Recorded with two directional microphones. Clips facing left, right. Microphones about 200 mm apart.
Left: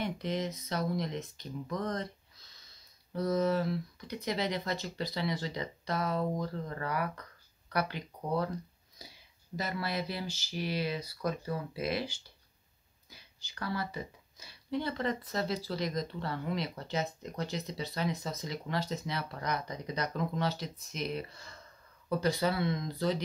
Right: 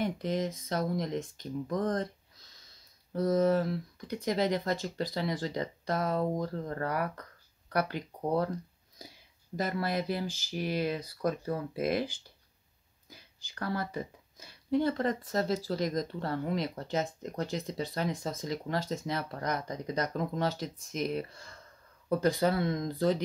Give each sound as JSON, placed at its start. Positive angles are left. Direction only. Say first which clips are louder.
{"t": 0.0, "sound": "speech", "louder": "right 3 dB", "side_deg": -45}
{"t": 9.0, "sound": "a sound", "louder": "right 3 dB", "side_deg": -50}
{"t": 9.6, "sound": "speech", "louder": "right 4 dB", "side_deg": -50}